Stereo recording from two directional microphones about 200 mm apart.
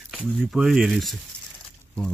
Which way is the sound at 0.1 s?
Centre (ahead or behind).